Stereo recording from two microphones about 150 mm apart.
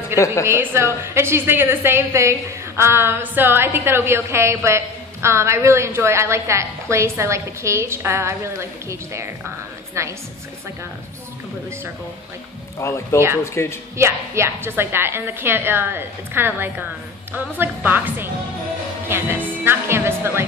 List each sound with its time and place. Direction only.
0.2 s speech: 20° left (ahead or behind)
0.5 s a woman's voice: 15° right (ahead or behind)
12.7 s speech: 20° left (ahead or behind)
13.9 s a woman's voice: 20° right (ahead or behind)
19.0 s music: 15° right (ahead or behind)